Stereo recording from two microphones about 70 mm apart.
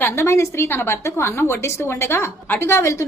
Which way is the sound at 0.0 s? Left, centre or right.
Left.